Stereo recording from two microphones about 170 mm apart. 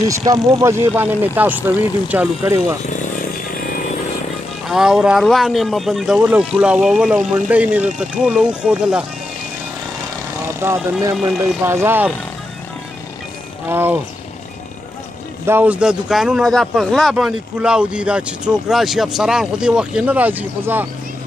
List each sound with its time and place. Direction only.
0.3 s speech: 20° right (ahead or behind)
3.2 s chainsaw: 55° left (ahead or behind)
4.6 s a man's voice: centre (ahead or behind)
10.6 s speech: 15° right (ahead or behind)
13.7 s speech: 15° right (ahead or behind)
15.4 s a man's voice: 10° right (ahead or behind)